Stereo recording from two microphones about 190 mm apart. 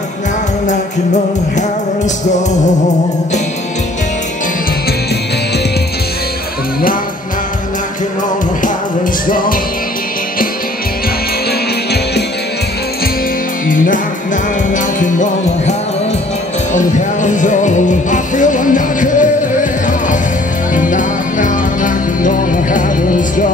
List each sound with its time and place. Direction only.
0.7 s music: 40° left (ahead or behind)
9.3 s music: 45° left (ahead or behind)
13.7 s music: 45° left (ahead or behind)
16.7 s music: 40° left (ahead or behind)